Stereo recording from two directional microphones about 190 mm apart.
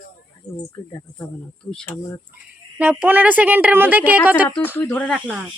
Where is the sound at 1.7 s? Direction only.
10° left (ahead or behind).